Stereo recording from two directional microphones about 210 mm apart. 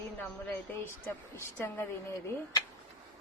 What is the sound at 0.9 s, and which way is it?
Speech, 10° left (ahead or behind).